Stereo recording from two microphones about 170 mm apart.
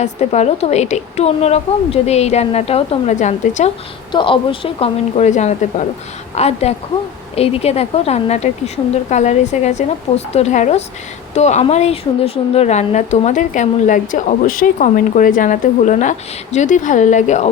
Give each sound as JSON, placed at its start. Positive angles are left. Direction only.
{"t": 0.0, "sound": "a woman's voice", "side_deg": 40}
{"t": 4.1, "sound": "a woman's voice", "side_deg": 30}